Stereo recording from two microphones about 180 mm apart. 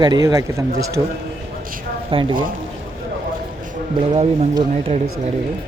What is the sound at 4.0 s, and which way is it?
Speech, 35° right (ahead or behind).